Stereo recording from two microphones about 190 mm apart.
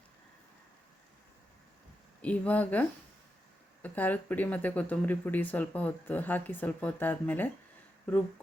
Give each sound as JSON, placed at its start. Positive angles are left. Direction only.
{"t": 2.2, "sound": "speech", "side_deg": 5}
{"t": 3.8, "sound": "speech", "side_deg": 10}